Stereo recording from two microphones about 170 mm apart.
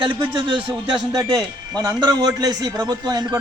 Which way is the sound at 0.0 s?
25° right (ahead or behind).